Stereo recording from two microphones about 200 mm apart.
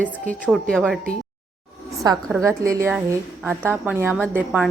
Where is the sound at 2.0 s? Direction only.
20° right (ahead or behind).